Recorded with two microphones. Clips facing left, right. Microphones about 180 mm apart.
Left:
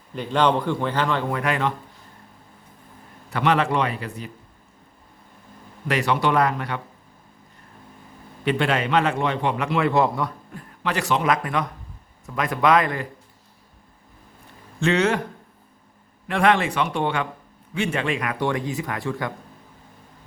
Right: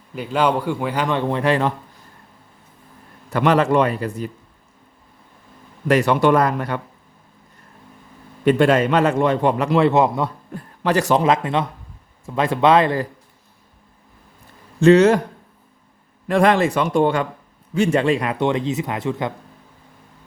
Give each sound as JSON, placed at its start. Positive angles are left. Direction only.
{"t": 0.1, "sound": "a man's voice", "side_deg": -5}
{"t": 1.4, "sound": "speech", "side_deg": -35}
{"t": 3.2, "sound": "a man's voice", "side_deg": -45}
{"t": 5.9, "sound": "a man's voice", "side_deg": -50}
{"t": 8.4, "sound": "a man's voice", "side_deg": -45}
{"t": 9.9, "sound": "speech", "side_deg": -20}
{"t": 10.5, "sound": "a man's voice", "side_deg": -40}
{"t": 11.3, "sound": "speech", "side_deg": -25}
{"t": 14.8, "sound": "speech", "side_deg": -40}
{"t": 16.2, "sound": "speech", "side_deg": -40}